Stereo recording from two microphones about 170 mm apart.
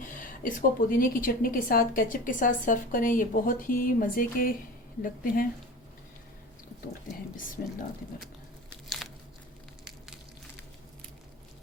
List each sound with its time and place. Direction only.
0.0 s a woman's voice: 50° left (ahead or behind)
7.6 s a woman's voice: 50° left (ahead or behind)